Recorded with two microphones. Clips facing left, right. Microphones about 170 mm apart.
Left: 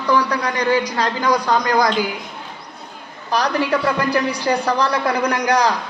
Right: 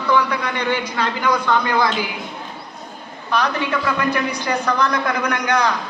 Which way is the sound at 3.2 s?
35° left (ahead or behind).